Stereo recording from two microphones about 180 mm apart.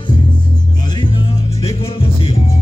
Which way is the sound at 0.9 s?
30° left (ahead or behind).